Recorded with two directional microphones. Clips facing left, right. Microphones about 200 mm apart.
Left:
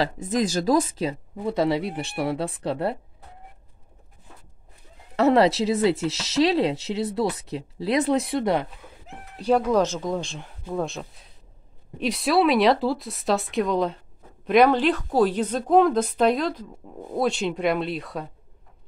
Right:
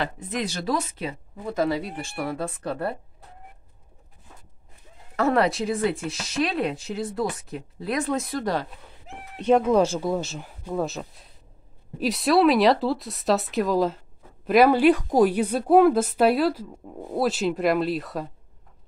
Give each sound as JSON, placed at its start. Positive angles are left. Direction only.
{"t": 0.0, "sound": "speech", "side_deg": 40}
{"t": 5.1, "sound": "speech", "side_deg": 25}
{"t": 9.6, "sound": "a woman's voice", "side_deg": -10}